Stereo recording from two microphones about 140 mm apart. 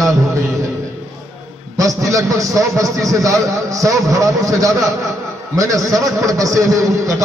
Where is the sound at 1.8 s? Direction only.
25° right (ahead or behind).